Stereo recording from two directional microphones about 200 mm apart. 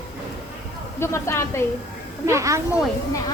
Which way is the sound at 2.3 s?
15° right (ahead or behind).